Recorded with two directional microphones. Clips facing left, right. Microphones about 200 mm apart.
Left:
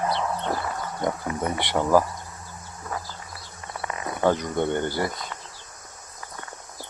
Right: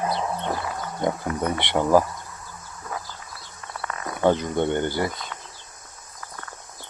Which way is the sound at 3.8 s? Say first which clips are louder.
Left 1 dB; 15° left (ahead or behind).